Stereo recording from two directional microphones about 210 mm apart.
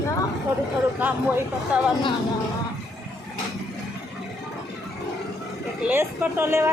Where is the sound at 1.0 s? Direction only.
10° right (ahead or behind).